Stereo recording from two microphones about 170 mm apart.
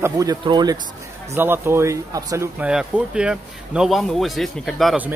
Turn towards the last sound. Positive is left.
turn(degrees=0)  # may be behind; listen again after turning